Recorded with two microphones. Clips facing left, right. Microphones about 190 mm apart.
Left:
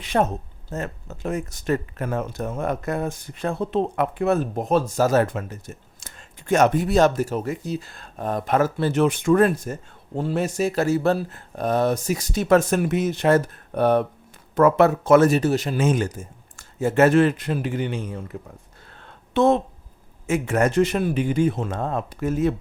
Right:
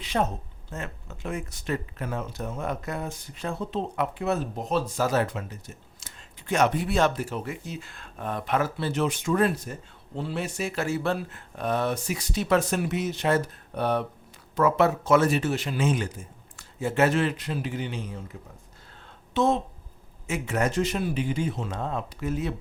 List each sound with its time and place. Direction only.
0.0 s speech: 50° left (ahead or behind)
0.7 s speech: 40° left (ahead or behind); by 18.3 s 55° left (ahead or behind)
19.0 s a sound: 60° left (ahead or behind)
20.2 s speech: 50° left (ahead or behind)